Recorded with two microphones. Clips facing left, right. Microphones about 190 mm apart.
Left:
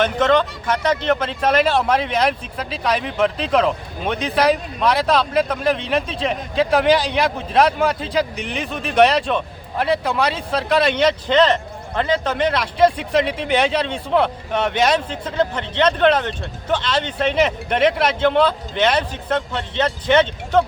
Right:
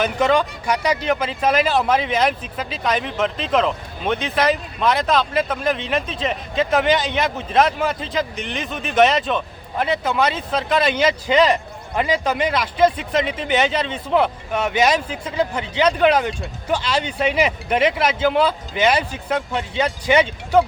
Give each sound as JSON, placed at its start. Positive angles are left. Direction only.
{"t": 0.0, "sound": "speech", "side_deg": -10}